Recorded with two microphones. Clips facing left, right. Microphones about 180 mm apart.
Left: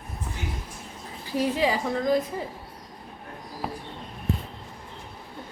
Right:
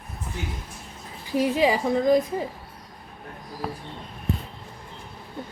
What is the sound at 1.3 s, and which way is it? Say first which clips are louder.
A woman's voice: right 3 dB; 15° right (ahead or behind).